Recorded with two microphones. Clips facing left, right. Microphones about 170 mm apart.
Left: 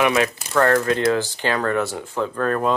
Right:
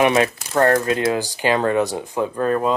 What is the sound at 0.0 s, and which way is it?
Speech, 25° right (ahead or behind).